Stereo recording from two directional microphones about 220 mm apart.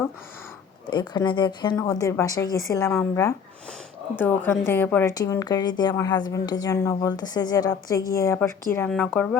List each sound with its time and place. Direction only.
0.9 s a woman's voice: 20° left (ahead or behind)